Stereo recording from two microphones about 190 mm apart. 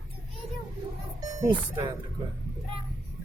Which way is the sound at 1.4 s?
25° right (ahead or behind).